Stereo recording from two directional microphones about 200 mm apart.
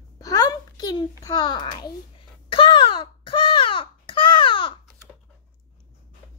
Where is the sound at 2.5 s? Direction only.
25° left (ahead or behind).